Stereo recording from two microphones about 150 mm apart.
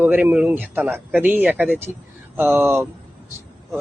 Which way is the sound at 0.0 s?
15° right (ahead or behind).